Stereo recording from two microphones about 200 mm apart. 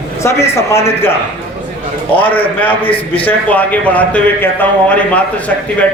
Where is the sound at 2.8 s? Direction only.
25° left (ahead or behind).